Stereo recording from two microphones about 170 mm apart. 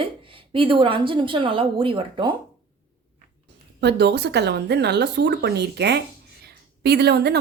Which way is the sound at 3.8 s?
80° right.